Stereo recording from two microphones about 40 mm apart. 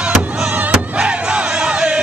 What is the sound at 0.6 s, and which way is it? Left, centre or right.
Crowd, right.